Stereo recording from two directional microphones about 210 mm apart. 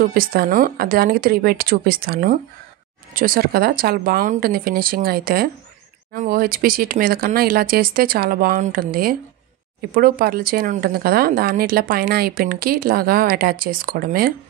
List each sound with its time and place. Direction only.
0.0 s speech: 45° right (ahead or behind)